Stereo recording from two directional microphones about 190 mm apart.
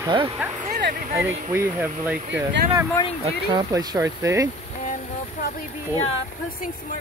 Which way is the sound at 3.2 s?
25° right (ahead or behind).